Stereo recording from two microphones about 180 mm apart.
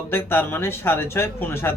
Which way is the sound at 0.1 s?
10° left (ahead or behind).